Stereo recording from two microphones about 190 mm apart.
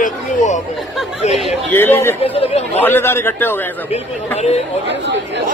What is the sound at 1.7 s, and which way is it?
Speech, 10° left (ahead or behind).